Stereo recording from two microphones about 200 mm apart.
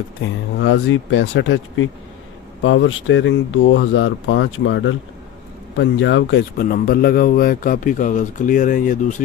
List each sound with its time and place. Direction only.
0.6 s speech: 70° left (ahead or behind)
6.6 s a man's voice: 45° left (ahead or behind)